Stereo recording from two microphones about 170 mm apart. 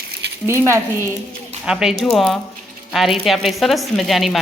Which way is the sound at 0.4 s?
15° right (ahead or behind).